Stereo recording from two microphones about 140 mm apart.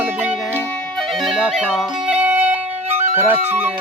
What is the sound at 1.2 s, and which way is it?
Music, 5° right (ahead or behind).